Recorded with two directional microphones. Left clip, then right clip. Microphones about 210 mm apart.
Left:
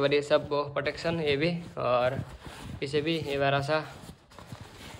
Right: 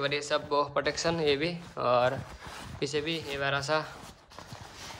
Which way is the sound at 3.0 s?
5° right (ahead or behind).